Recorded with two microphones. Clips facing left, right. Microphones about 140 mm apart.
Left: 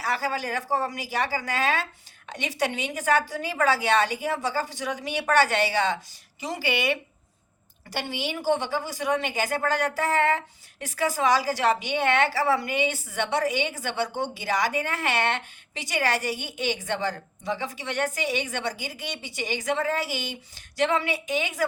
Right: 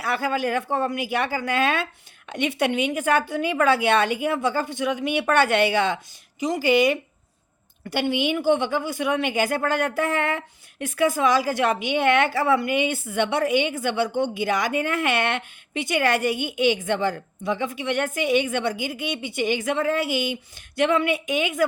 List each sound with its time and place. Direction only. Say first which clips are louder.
0.0 s a woman's voice: right 4 dB; 55° right (ahead or behind)
7.9 s a woman's voice: right 8 dB; 55° right (ahead or behind)